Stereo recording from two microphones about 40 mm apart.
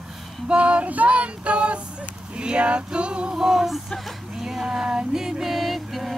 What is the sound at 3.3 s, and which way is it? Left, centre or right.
Music, centre.